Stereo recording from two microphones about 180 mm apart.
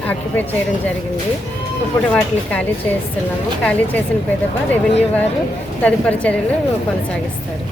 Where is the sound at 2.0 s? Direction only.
5° left (ahead or behind).